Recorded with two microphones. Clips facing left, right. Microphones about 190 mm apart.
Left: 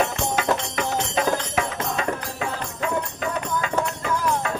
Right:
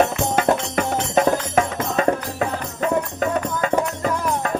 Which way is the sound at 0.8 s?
45° right (ahead or behind).